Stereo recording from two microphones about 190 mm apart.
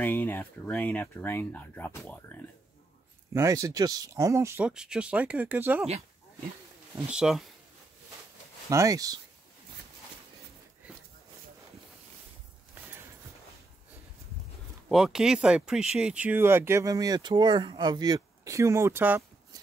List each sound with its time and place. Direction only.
0.0 s speech: 10° left (ahead or behind)
3.3 s speech: 15° right (ahead or behind)
7.1 s speech: 5° right (ahead or behind)
8.6 s speech: 15° right (ahead or behind)
14.9 s speech: centre (ahead or behind)